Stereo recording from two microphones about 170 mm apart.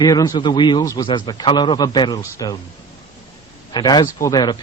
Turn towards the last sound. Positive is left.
turn(degrees=25)  # may be behind; listen again after turning